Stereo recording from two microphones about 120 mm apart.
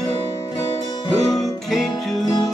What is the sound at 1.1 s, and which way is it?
Music, 30° left (ahead or behind).